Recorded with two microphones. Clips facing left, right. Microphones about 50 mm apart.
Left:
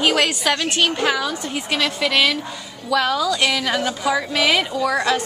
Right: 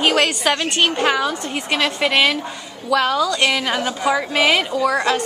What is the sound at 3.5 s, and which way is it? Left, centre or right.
Speech, centre.